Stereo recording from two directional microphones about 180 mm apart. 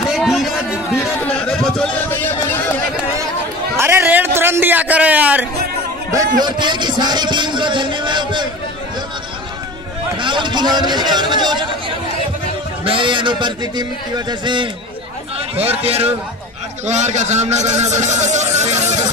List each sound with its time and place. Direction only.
0.1 s a sound: centre (ahead or behind)
3.7 s a sound: 15° right (ahead or behind)
6.4 s a man's voice: 25° right (ahead or behind)
10.1 s a man's voice: 25° right (ahead or behind)
12.8 s a man's voice: 30° right (ahead or behind)
15.8 s a man's voice: 35° right (ahead or behind)